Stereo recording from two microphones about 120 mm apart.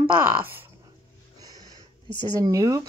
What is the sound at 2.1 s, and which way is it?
Speech, 40° left (ahead or behind).